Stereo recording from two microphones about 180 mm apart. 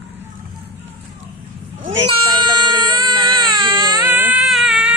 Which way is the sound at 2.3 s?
25° right (ahead or behind).